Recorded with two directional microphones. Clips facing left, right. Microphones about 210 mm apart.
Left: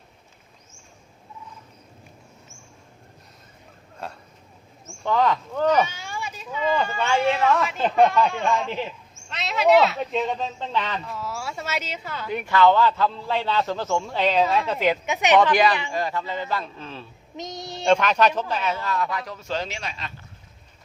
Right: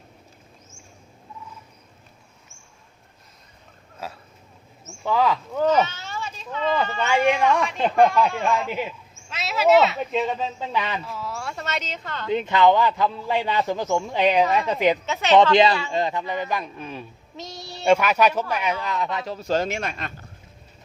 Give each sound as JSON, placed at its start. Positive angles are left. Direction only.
{"t": 4.0, "sound": "a man's voice", "side_deg": -5}
{"t": 5.8, "sound": "a sound", "side_deg": 10}
{"t": 6.8, "sound": "a woman's voice", "side_deg": 10}
{"t": 12.3, "sound": "a man's voice", "side_deg": -20}
{"t": 15.0, "sound": "a woman's voice", "side_deg": 15}
{"t": 15.9, "sound": "a man's voice", "side_deg": -20}
{"t": 17.3, "sound": "child singing", "side_deg": 20}
{"t": 17.8, "sound": "a man's voice", "side_deg": -10}